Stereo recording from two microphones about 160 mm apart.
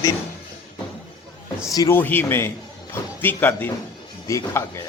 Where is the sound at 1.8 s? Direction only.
15° left (ahead or behind).